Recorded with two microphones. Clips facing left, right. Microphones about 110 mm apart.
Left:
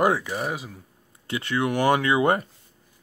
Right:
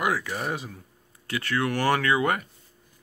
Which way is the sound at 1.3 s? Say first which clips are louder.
Left 2 dB; 20° left (ahead or behind).